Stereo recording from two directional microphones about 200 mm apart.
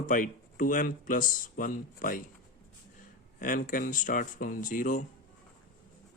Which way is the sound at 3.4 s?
40° left (ahead or behind).